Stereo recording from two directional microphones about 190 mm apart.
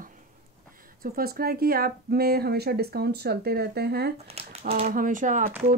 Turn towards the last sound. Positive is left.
turn(degrees=-45)  # may be behind; listen again after turning